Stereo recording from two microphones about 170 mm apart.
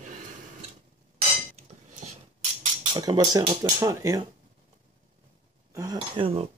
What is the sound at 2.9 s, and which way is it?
Speech, 20° right (ahead or behind).